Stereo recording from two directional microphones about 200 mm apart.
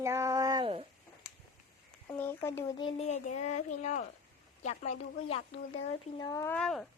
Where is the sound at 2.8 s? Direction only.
25° left (ahead or behind).